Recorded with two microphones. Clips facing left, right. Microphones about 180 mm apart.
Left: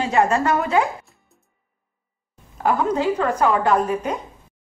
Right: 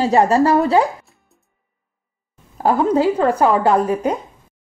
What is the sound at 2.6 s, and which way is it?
A woman's voice, 30° right (ahead or behind).